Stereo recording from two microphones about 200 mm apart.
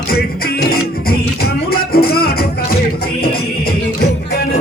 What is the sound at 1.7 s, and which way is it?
Music, 50° left (ahead or behind).